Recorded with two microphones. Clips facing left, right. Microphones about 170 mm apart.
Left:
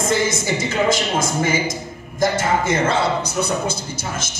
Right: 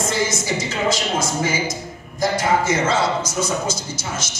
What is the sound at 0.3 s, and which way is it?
Speech, 55° left (ahead or behind).